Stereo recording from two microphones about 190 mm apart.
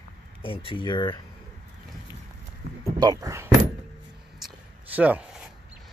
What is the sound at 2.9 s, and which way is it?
Speech, 20° right (ahead or behind).